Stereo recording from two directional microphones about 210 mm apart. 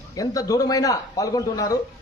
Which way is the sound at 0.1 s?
15° left (ahead or behind).